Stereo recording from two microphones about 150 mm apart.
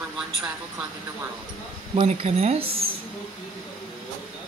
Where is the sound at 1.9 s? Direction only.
45° right (ahead or behind).